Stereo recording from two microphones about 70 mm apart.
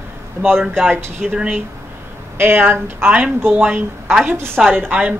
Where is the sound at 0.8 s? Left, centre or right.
Right.